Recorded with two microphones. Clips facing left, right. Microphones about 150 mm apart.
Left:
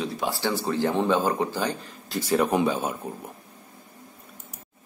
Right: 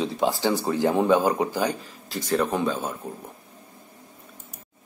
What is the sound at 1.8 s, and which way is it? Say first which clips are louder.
Speech: left 2 dB; 5° left (ahead or behind).